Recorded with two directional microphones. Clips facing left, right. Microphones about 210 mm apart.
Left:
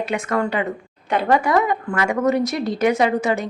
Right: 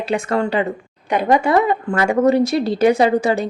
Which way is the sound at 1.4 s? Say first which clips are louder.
Right 3 dB; 30° right (ahead or behind).